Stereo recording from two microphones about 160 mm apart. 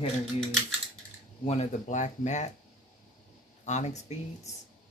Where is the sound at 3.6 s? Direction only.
45° left (ahead or behind).